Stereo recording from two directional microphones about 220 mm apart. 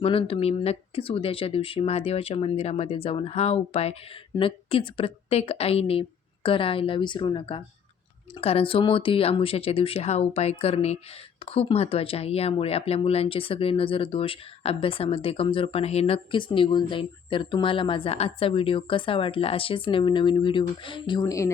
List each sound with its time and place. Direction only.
0.0 s speech: 25° left (ahead or behind)